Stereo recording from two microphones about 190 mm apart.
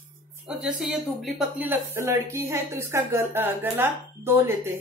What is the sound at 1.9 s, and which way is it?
A woman's voice, 15° right (ahead or behind).